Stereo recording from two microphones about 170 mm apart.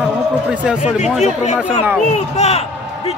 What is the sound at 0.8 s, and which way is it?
Speech, 45° left (ahead or behind).